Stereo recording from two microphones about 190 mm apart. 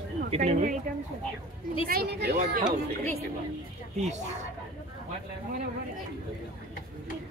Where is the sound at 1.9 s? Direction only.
55° right (ahead or behind).